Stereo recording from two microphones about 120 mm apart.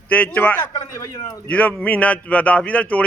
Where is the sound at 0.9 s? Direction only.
25° left (ahead or behind).